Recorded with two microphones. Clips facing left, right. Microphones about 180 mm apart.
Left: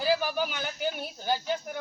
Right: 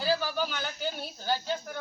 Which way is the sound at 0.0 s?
15° left (ahead or behind).